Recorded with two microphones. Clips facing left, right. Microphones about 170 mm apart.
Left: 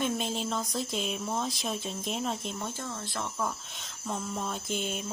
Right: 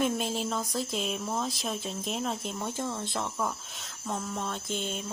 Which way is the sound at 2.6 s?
15° right (ahead or behind).